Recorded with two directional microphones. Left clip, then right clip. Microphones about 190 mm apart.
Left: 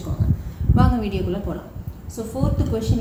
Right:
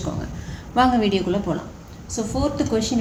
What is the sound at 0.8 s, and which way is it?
Speech, 55° right (ahead or behind).